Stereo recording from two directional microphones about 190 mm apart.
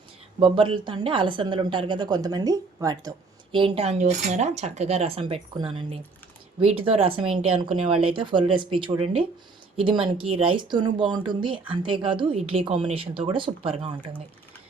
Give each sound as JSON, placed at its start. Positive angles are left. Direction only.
{"t": 0.3, "sound": "a woman's voice", "side_deg": -30}